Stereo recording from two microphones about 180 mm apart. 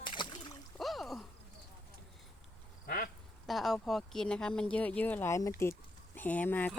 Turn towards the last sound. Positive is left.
turn(degrees=10)  # may be behind; listen again after turning